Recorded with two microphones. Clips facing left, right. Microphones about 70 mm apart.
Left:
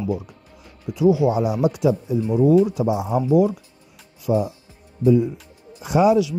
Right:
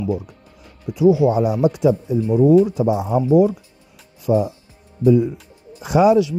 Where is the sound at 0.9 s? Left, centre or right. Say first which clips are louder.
Right 3 dB; right.